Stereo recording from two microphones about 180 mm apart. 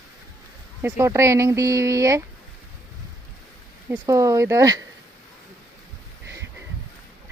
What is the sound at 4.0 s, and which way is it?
Speech, 20° right (ahead or behind).